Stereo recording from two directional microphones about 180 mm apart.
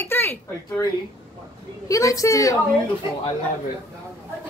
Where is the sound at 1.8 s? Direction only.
20° left (ahead or behind).